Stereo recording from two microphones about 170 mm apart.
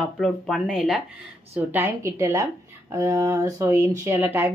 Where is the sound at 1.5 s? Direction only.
15° right (ahead or behind).